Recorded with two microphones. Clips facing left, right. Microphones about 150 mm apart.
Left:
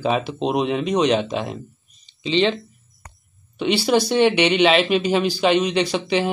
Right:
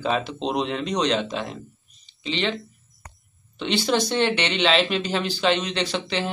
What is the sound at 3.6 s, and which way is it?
Speech, 10° left (ahead or behind).